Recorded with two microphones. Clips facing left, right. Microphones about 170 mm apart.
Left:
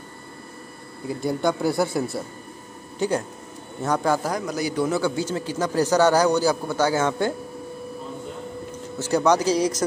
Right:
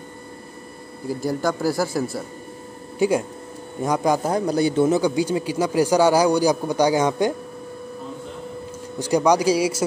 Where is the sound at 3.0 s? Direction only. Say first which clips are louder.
Right 4 dB; 10° right (ahead or behind).